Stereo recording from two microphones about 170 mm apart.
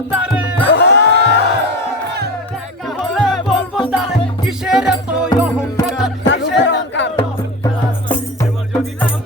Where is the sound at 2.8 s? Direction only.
Centre (ahead or behind).